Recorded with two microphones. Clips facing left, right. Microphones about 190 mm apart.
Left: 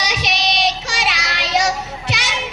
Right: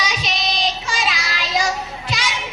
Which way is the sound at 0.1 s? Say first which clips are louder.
Left 3 dB; 70° left (ahead or behind).